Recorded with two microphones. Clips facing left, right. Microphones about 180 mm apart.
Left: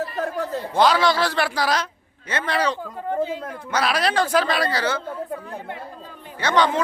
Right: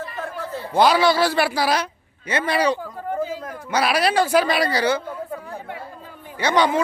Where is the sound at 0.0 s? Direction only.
40° left (ahead or behind).